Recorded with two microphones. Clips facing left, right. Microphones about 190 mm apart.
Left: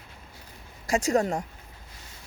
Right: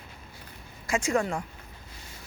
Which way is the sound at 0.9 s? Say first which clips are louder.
Left 3 dB; 40° left (ahead or behind).